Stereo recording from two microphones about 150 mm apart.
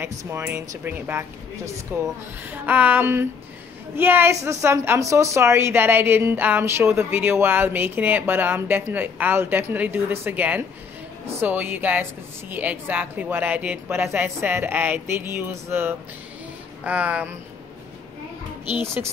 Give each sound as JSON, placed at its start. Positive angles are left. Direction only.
{"t": 0.0, "sound": "a woman's voice", "side_deg": -15}